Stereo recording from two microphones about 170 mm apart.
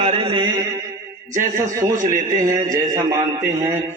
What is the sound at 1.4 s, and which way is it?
A man's voice, 15° right (ahead or behind).